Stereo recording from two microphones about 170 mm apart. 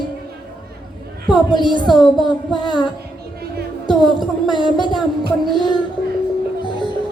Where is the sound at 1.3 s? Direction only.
25° left (ahead or behind).